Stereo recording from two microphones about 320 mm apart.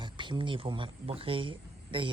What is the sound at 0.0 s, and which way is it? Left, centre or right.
Speech, centre.